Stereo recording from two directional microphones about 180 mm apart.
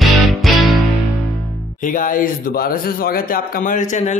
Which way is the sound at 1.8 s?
50° left (ahead or behind).